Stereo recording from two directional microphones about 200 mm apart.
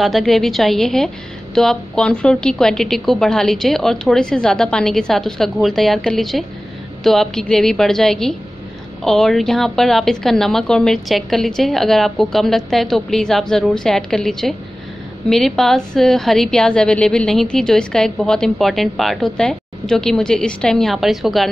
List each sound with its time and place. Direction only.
0.0 s a woman's voice: centre (ahead or behind)